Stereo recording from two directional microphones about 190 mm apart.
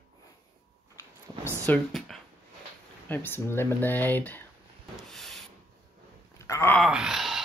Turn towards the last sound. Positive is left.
turn(degrees=0)  # may be behind; listen again after turning